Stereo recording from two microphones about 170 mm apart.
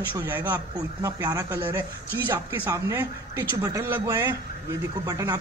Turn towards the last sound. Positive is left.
turn(degrees=-20)  # may be behind; listen again after turning